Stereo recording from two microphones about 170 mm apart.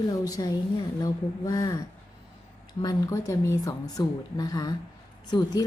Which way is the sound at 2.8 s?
20° left (ahead or behind).